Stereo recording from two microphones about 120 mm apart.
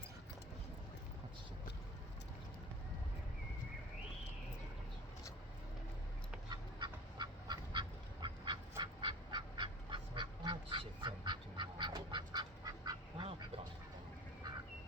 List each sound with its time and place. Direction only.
6.5 s duck: 40° right (ahead or behind)